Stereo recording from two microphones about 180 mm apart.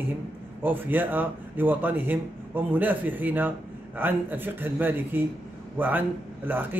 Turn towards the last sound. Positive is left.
turn(degrees=-10)  # may be behind; listen again after turning